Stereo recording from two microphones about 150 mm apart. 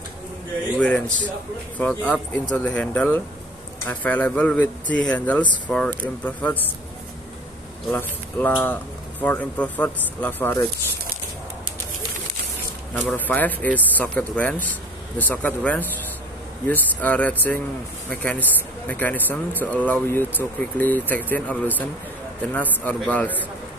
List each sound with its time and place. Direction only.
0.7 s speech: 10° left (ahead or behind)
7.9 s speech: 15° left (ahead or behind)
12.9 s a man's voice: 10° left (ahead or behind)